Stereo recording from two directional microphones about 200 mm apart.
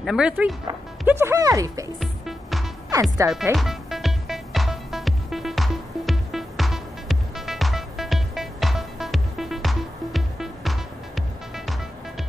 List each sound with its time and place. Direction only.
0.0 s speech: 5° right (ahead or behind)
2.0 s music: centre (ahead or behind)
2.9 s speech: 15° right (ahead or behind)
3.5 s music: centre (ahead or behind)